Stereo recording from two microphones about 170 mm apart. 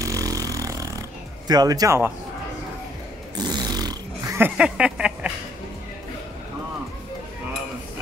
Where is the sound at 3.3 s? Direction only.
25° right (ahead or behind); by 5.3 s 5° right (ahead or behind).